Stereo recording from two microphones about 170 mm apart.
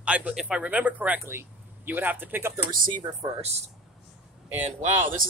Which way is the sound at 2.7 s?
55° right (ahead or behind).